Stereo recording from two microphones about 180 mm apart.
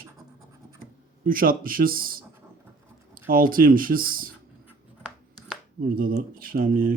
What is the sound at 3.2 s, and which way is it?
Speech, 50° right (ahead or behind).